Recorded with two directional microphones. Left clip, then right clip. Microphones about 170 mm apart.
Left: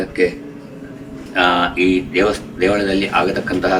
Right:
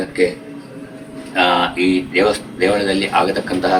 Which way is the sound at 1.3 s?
15° right (ahead or behind).